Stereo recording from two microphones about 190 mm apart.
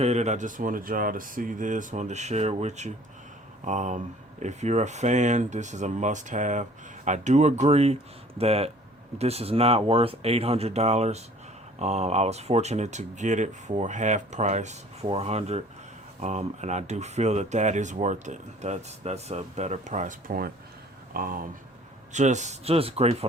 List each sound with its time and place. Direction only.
0.0 s speech: 35° right (ahead or behind)